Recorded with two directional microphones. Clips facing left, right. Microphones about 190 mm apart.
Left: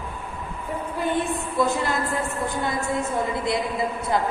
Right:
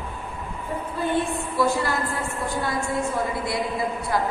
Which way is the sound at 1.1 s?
20° left (ahead or behind).